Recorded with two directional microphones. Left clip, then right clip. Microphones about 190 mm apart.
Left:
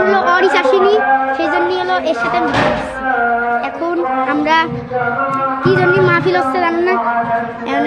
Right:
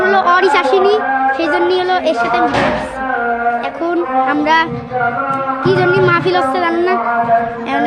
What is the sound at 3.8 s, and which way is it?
A woman's voice, 15° right (ahead or behind).